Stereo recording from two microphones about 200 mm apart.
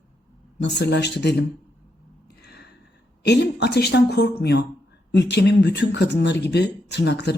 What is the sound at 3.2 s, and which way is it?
Speech, 55° left (ahead or behind).